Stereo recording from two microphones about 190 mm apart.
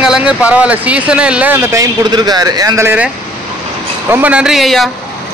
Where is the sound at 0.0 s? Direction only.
5° right (ahead or behind).